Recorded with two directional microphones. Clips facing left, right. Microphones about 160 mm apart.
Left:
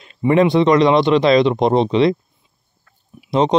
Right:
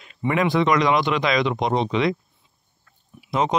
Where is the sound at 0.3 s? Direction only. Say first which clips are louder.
Left 7 dB; 30° left (ahead or behind).